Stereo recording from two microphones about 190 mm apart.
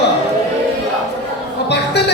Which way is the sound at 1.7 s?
60° left (ahead or behind).